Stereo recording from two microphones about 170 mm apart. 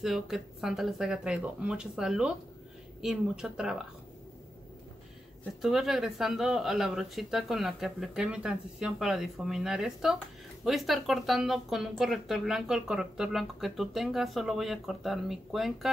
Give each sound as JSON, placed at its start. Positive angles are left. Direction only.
{"t": 0.0, "sound": "speech", "side_deg": 0}
{"t": 5.6, "sound": "speech", "side_deg": 0}